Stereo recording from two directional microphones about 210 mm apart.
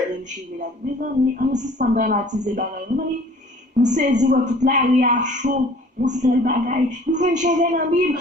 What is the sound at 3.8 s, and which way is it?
A woman's voice, 35° right (ahead or behind).